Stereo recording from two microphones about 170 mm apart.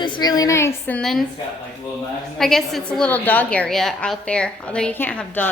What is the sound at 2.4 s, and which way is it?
A woman's voice, centre (ahead or behind).